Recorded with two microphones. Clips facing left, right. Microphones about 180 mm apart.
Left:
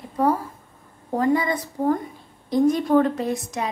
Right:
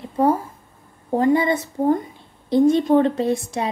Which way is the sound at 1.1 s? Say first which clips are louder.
Right 3 dB; 25° right (ahead or behind).